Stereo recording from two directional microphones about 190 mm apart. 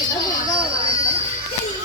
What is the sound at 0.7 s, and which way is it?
Music, 30° right (ahead or behind).